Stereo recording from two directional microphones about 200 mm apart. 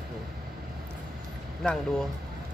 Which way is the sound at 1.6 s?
Centre (ahead or behind).